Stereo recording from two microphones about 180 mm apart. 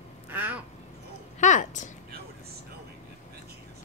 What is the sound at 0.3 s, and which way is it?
Quack, 10° right (ahead or behind).